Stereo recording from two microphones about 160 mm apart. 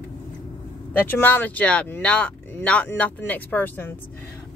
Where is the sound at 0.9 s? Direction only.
10° left (ahead or behind).